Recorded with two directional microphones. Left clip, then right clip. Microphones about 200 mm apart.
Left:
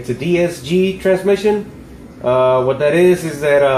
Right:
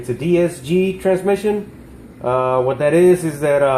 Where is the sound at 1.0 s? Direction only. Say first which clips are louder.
Left 4 dB; 40° right (ahead or behind).